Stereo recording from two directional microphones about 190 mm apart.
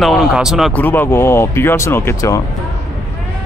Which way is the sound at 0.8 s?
10° left (ahead or behind).